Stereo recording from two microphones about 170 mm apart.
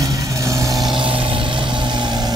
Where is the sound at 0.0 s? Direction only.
20° right (ahead or behind).